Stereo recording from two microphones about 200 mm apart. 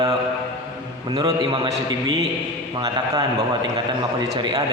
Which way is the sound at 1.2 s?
25° right (ahead or behind).